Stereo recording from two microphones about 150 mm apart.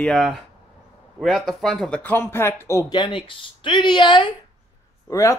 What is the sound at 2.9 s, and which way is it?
Speech, 35° left (ahead or behind).